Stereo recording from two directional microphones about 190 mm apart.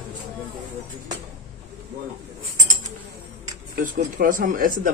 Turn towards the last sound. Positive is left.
turn(degrees=-45)  # may be behind; listen again after turning